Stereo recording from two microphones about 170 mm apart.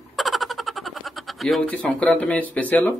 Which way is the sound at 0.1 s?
Centre (ahead or behind).